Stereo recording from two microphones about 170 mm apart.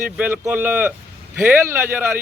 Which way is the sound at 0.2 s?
10° right (ahead or behind).